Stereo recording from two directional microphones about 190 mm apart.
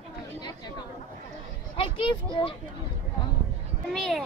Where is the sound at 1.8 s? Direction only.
25° left (ahead or behind).